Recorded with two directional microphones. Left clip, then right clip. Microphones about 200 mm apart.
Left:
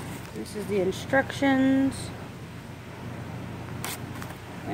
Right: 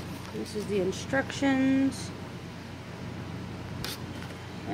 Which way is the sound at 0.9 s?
15° left (ahead or behind).